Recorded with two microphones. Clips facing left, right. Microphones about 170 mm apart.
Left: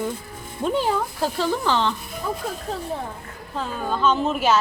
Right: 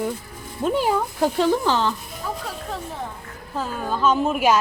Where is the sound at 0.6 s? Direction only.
10° right (ahead or behind).